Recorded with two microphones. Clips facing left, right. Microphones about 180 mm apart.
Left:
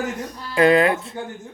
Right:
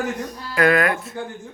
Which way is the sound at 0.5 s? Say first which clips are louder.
Left 3 dB; 30° left (ahead or behind).